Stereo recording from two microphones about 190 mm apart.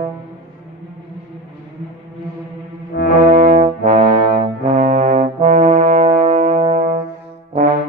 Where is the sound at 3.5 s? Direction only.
35° right (ahead or behind).